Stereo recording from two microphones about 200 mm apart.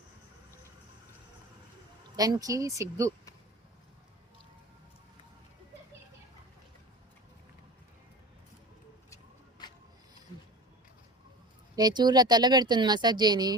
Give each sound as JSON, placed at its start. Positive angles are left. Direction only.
{"t": 2.1, "sound": "speech", "side_deg": -20}
{"t": 9.6, "sound": "a sound", "side_deg": 20}
{"t": 11.8, "sound": "speech", "side_deg": -20}